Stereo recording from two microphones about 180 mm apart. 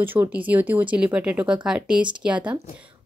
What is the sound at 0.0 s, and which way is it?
Speech, 10° right (ahead or behind).